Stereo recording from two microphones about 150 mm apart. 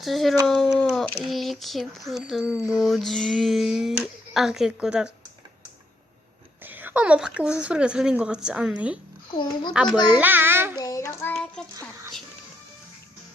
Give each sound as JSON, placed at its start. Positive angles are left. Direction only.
{"t": 0.0, "sound": "speech", "side_deg": 0}
{"t": 6.7, "sound": "speech", "side_deg": -10}
{"t": 9.3, "sound": "a child's voice", "side_deg": 35}
{"t": 10.2, "sound": "speech", "side_deg": -15}
{"t": 10.8, "sound": "a sound", "side_deg": 20}
{"t": 11.3, "sound": "child singing", "side_deg": 5}